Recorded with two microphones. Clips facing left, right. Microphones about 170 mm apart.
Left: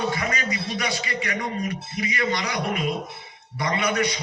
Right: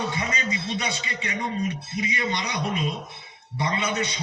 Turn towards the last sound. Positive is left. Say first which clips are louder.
# left 3 dB
turn(degrees=-25)  # may be behind; listen again after turning